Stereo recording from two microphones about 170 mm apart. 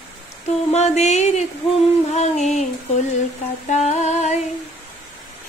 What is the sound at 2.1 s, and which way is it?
Music, 40° left (ahead or behind).